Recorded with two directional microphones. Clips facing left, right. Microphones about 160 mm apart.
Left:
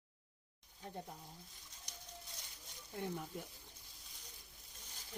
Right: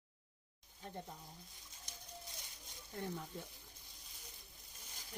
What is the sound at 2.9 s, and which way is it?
Speech, 15° left (ahead or behind).